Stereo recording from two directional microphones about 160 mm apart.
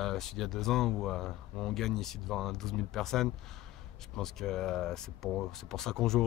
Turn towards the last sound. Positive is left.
turn(degrees=5)  # may be behind; listen again after turning